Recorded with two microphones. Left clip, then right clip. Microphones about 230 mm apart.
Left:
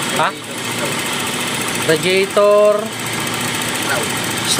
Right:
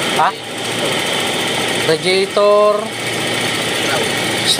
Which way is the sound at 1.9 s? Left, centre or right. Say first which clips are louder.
Left 2 dB; centre.